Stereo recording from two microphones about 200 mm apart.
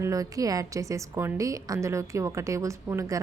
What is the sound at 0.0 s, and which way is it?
A woman's voice, 15° right (ahead or behind).